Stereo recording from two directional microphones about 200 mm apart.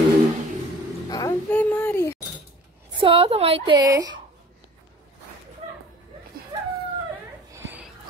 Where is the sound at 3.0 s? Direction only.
30° right (ahead or behind).